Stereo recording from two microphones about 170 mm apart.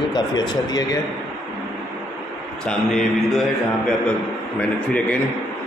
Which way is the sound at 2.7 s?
5° left (ahead or behind).